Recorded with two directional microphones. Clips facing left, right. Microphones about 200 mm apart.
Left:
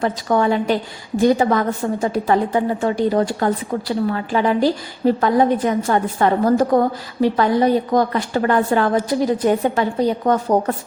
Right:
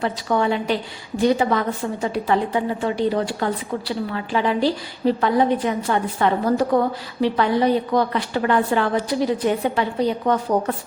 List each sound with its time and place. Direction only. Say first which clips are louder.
0.0 s a woman's voice: left 3 dB; 45° left (ahead or behind)